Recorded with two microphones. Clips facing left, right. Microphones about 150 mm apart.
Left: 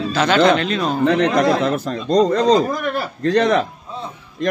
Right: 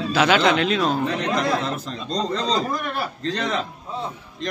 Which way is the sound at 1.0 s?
65° left (ahead or behind).